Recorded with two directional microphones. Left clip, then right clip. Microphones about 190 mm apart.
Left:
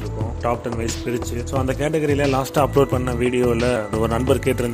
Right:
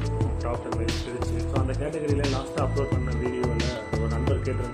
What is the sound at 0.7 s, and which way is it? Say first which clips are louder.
Speech: left 5 dB; centre (ahead or behind).